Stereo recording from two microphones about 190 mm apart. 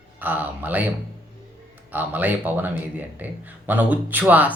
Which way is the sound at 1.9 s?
10° right (ahead or behind).